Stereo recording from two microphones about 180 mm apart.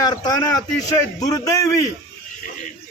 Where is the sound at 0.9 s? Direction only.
20° left (ahead or behind).